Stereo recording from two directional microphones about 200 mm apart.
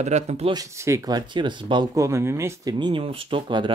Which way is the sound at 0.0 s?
35° right (ahead or behind).